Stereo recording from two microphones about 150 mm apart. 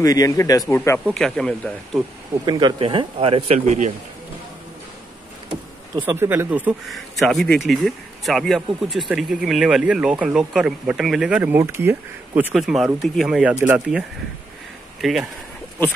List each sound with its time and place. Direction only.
0.0 s speech: 25° left (ahead or behind); by 2.0 s 5° left (ahead or behind)
2.4 s speech: 30° right (ahead or behind); by 3.9 s 50° right (ahead or behind)
6.0 s speech: 15° right (ahead or behind)
6.9 s speech: centre (ahead or behind); by 12.4 s 15° right (ahead or behind)
12.5 s speech: centre (ahead or behind)